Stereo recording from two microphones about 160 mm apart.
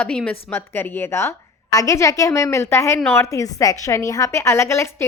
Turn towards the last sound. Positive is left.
turn(degrees=15)  # may be behind; listen again after turning